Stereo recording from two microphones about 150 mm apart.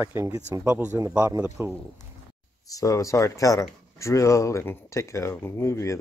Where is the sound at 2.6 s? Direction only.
25° left (ahead or behind).